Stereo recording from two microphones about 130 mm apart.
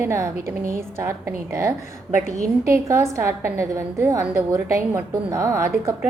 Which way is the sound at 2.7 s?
25° right (ahead or behind).